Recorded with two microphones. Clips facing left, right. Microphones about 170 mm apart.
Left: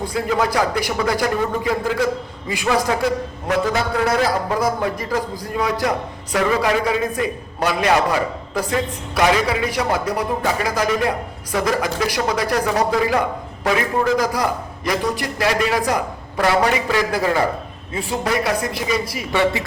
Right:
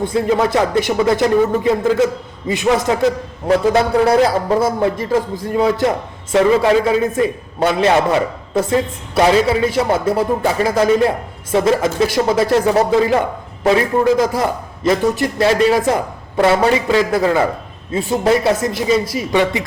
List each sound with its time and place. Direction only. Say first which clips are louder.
0.0 s a man's voice: right 5 dB; 25° right (ahead or behind)